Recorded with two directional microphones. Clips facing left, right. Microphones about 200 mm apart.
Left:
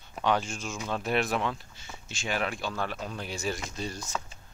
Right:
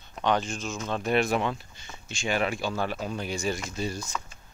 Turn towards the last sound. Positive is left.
turn(degrees=-5)  # may be behind; listen again after turning